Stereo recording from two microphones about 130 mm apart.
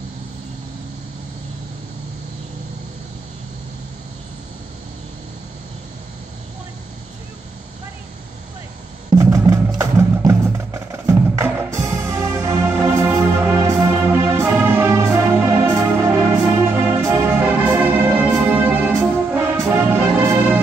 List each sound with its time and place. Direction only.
9.1 s music: 20° right (ahead or behind)
9.8 s wood block: 20° right (ahead or behind)